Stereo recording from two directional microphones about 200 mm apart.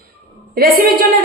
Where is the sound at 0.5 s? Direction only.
45° right (ahead or behind).